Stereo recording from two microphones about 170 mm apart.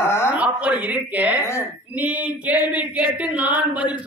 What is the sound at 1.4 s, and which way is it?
Speech, 15° left (ahead or behind).